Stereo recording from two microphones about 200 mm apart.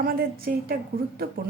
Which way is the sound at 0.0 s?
50° right (ahead or behind).